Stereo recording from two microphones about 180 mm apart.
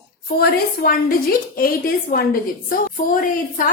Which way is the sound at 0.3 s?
55° left (ahead or behind).